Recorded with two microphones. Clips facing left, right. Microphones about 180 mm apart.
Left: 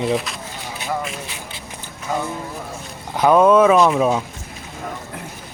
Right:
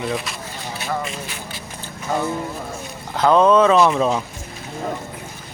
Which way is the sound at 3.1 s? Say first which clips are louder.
Left 1 dB; 15° left (ahead or behind).